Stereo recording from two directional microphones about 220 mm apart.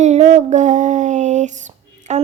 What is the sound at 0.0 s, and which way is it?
Female singing, 30° right (ahead or behind).